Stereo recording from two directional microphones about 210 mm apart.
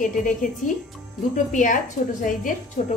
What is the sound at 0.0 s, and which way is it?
Speech, 40° left (ahead or behind).